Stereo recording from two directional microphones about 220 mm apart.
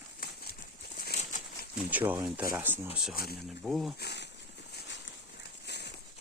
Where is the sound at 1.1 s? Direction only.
35° left (ahead or behind).